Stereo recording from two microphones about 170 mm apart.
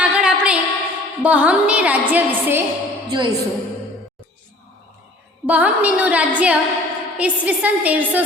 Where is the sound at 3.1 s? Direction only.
30° right (ahead or behind).